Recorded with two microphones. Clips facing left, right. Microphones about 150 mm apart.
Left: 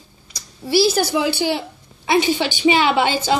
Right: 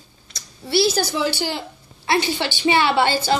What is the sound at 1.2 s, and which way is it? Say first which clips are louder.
A woman's voice: left 4 dB; 15° left (ahead or behind).